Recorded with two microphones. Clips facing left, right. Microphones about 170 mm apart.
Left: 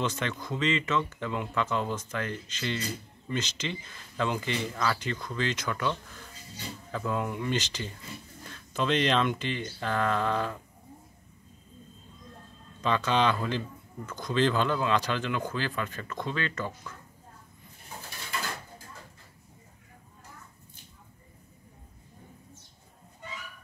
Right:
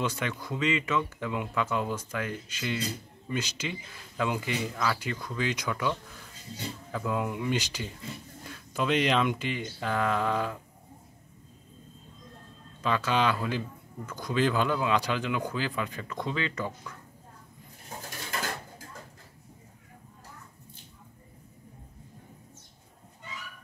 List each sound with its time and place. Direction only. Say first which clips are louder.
0.0 s speech: even; 10° right (ahead or behind)
12.8 s speech: left 1 dB; 5° right (ahead or behind)